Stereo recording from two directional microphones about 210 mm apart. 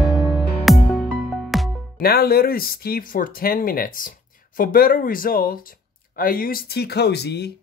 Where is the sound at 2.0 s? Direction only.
45° left (ahead or behind).